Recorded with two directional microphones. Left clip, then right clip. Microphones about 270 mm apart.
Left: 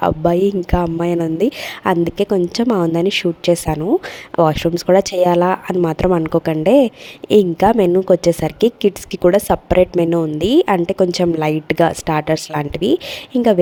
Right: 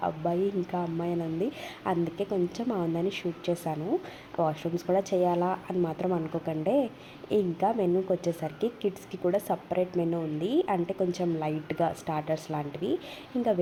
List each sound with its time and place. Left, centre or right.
0.0 s speech: left